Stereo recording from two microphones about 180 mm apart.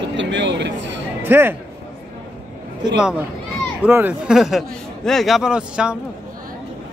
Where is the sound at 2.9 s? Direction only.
5° right (ahead or behind).